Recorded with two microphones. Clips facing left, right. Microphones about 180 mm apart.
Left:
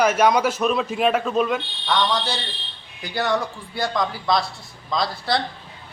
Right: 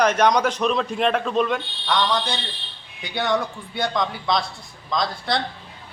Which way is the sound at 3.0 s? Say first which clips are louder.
Even; centre (ahead or behind).